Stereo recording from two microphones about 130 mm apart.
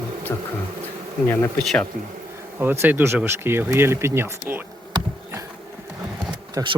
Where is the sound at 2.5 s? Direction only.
15° right (ahead or behind).